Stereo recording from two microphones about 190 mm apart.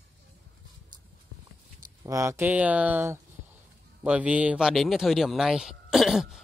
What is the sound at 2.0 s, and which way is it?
A man's voice, 15° right (ahead or behind).